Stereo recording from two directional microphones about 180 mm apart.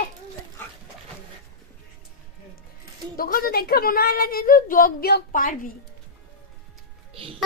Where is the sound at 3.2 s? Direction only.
55° left (ahead or behind).